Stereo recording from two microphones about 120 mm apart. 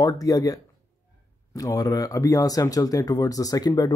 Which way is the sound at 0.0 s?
30° left (ahead or behind).